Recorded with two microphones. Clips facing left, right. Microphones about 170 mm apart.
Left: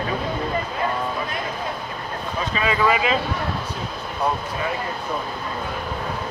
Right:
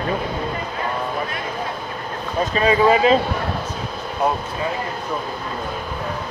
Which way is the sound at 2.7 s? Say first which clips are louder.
Right 6 dB; 30° right (ahead or behind).